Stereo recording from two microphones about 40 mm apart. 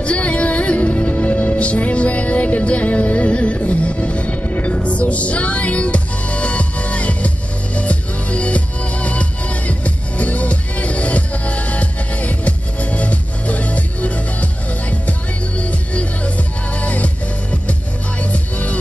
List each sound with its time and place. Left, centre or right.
0.0 s music: left
4.6 s music: left